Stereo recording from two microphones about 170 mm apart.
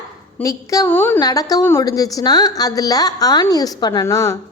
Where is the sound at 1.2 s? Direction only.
20° left (ahead or behind).